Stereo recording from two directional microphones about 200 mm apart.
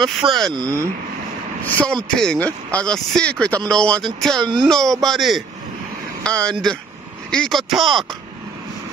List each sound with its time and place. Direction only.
0.0 s speech: centre (ahead or behind)
0.6 s speech: 15° right (ahead or behind)
1.6 s speech: 10° left (ahead or behind)